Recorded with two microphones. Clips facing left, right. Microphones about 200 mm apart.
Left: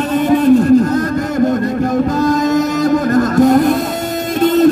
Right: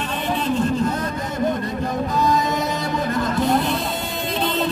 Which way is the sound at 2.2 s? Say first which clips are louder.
Left 5 dB; 45° left (ahead or behind).